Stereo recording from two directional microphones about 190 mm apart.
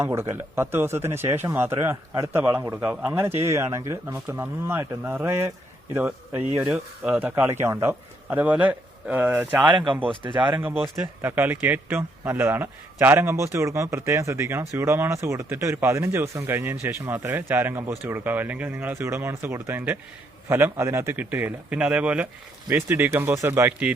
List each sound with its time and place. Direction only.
0.0 s a man's voice: 10° right (ahead or behind)
9.6 s speech: 25° right (ahead or behind)
11.2 s a man's voice: 10° right (ahead or behind)